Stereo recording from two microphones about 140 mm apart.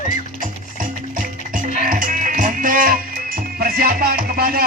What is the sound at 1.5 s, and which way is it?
Music, 75° right (ahead or behind).